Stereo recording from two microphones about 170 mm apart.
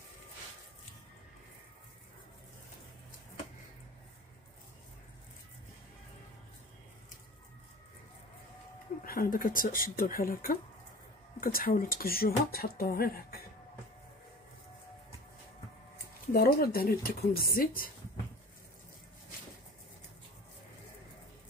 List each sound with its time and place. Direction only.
9.0 s speech: 60° left (ahead or behind)
16.3 s speech: 60° left (ahead or behind)